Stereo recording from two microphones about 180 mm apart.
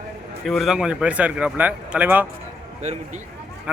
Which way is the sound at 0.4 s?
Centre (ahead or behind).